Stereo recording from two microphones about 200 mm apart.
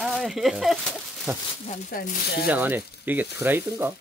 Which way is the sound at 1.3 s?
10° right (ahead or behind).